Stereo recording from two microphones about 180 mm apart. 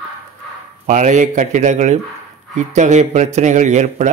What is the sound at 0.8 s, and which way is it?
A man's voice, 40° right (ahead or behind).